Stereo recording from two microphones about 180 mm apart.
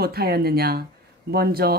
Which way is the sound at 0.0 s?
60° right (ahead or behind).